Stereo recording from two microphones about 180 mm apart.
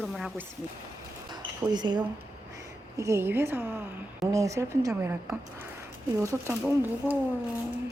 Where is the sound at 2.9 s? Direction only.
15° right (ahead or behind).